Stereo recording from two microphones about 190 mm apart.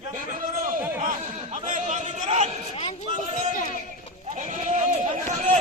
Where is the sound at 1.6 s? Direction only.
40° right (ahead or behind).